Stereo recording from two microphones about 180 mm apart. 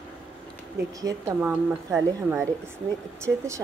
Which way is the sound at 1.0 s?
15° right (ahead or behind).